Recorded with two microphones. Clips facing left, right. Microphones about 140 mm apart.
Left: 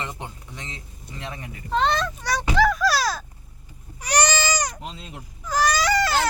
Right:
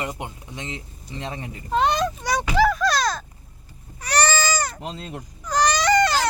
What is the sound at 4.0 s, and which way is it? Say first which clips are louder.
Baby cry: right 1 dB; 15° left (ahead or behind).